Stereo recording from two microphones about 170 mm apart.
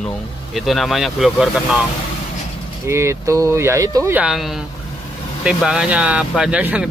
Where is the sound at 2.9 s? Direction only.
15° right (ahead or behind).